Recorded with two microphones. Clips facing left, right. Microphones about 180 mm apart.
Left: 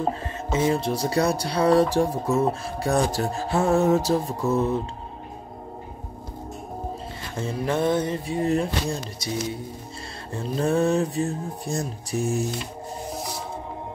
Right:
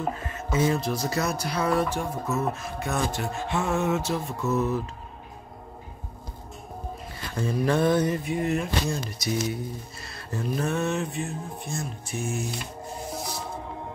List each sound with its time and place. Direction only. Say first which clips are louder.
0.0 s speech: left 4 dB; 30° left (ahead or behind)
7.3 s speech: right 1 dB; 25° left (ahead or behind)